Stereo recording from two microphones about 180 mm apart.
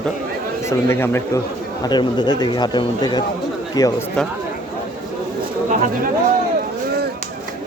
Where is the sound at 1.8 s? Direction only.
25° left (ahead or behind).